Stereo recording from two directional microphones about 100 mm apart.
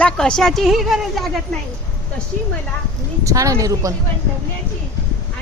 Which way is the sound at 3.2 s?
30° right (ahead or behind).